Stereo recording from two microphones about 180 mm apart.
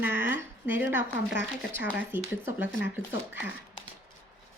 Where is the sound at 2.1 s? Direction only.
10° right (ahead or behind).